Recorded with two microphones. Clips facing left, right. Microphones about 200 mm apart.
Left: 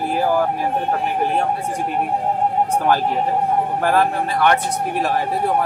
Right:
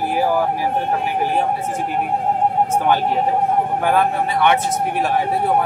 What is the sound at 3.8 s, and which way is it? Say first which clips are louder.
Speech: even; centre (ahead or behind).